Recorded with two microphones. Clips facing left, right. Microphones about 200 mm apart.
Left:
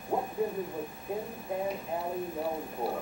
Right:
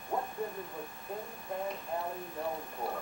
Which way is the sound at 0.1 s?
15° left (ahead or behind).